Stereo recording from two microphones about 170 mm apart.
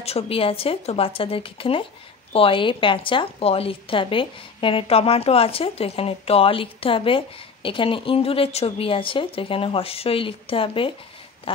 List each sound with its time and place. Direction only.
0.0 s a woman's voice: 35° left (ahead or behind)